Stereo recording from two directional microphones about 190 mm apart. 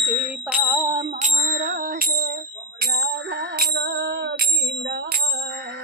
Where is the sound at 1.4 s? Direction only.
60° right (ahead or behind).